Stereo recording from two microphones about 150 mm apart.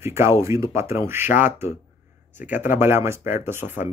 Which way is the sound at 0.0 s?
15° right (ahead or behind).